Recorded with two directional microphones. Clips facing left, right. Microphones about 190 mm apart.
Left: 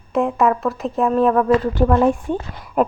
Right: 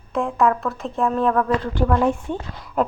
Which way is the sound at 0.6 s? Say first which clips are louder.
Left 3 dB; centre (ahead or behind).